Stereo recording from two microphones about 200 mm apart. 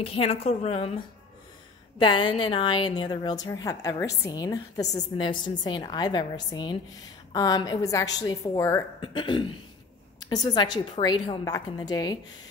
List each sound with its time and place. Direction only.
0.0 s a woman's voice: 30° left (ahead or behind)